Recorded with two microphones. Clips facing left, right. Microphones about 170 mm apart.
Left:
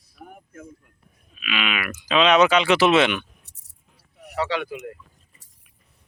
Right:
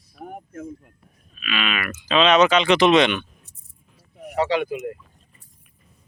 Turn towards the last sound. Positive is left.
turn(degrees=-15)  # may be behind; listen again after turning